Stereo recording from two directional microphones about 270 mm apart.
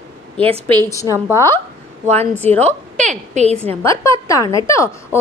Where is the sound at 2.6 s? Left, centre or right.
Right.